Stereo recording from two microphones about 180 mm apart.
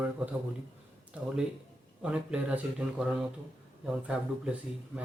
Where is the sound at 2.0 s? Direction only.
5° right (ahead or behind).